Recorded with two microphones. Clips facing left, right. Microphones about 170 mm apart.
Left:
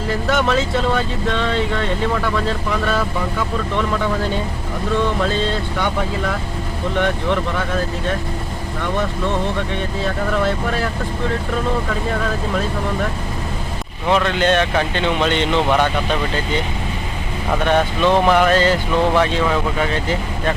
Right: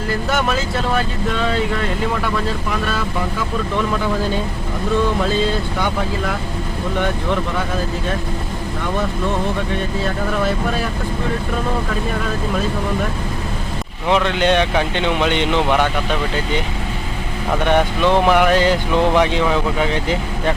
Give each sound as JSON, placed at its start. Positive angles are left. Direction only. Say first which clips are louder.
{"t": 0.3, "sound": "speech", "louder": "left 4 dB", "side_deg": -5}
{"t": 9.0, "sound": "speech", "louder": "even", "side_deg": -5}
{"t": 14.1, "sound": "speech", "louder": "even", "side_deg": -15}
{"t": 17.7, "sound": "speech", "louder": "even", "side_deg": -15}